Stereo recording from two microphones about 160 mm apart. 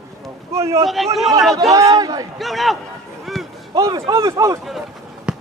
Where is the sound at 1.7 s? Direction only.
20° right (ahead or behind).